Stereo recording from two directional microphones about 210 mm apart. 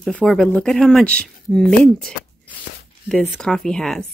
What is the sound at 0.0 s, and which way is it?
Speech, 5° left (ahead or behind).